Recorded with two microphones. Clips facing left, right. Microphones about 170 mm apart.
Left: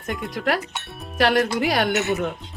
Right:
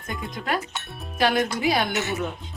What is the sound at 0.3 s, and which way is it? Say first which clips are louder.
Speech: left 3 dB; 75° left (ahead or behind).